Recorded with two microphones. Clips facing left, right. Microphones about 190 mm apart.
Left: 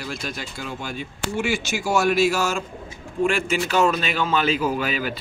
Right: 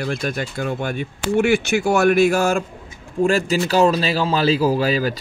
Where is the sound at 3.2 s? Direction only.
40° right (ahead or behind).